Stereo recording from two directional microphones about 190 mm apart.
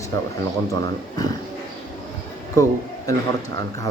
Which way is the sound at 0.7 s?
20° left (ahead or behind).